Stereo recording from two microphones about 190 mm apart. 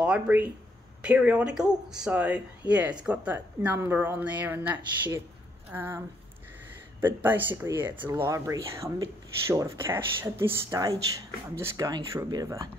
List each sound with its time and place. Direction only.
0.0 s speech: 5° right (ahead or behind)